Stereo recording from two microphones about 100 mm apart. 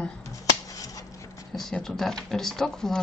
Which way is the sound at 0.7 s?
35° left (ahead or behind).